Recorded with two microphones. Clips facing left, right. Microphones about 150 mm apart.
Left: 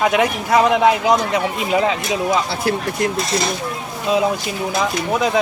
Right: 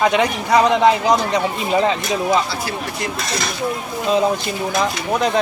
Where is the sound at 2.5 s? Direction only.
55° left (ahead or behind).